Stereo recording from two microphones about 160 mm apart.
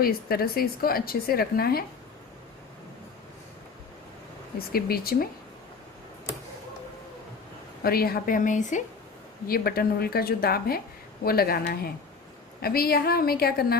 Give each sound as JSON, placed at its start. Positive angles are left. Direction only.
{"t": 0.0, "sound": "speech", "side_deg": 70}
{"t": 4.6, "sound": "speech", "side_deg": 70}
{"t": 7.8, "sound": "a woman's voice", "side_deg": 70}
{"t": 9.5, "sound": "speech", "side_deg": 70}